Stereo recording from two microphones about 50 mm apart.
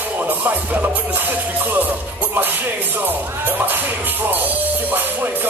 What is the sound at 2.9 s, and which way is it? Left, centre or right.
Music, right.